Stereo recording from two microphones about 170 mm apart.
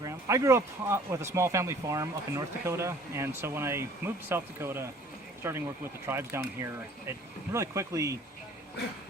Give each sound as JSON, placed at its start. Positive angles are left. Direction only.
{"t": 0.0, "sound": "speech", "side_deg": -20}